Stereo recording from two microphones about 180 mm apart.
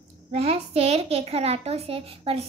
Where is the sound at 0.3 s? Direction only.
35° right (ahead or behind).